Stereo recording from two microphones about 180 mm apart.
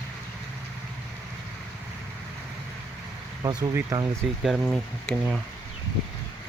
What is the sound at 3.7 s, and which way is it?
Speech, 20° right (ahead or behind).